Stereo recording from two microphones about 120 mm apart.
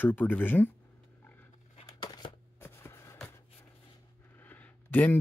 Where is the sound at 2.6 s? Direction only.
20° left (ahead or behind).